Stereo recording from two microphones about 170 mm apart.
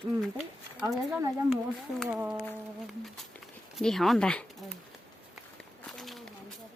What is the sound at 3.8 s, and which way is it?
Speech, centre (ahead or behind).